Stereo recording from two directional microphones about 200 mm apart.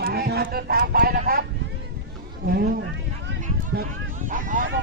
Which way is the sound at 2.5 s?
50° right (ahead or behind).